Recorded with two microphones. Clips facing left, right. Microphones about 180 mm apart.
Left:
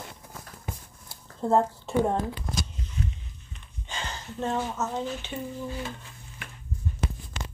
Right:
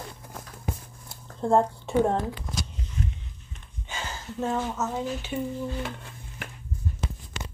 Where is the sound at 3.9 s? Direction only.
5° right (ahead or behind).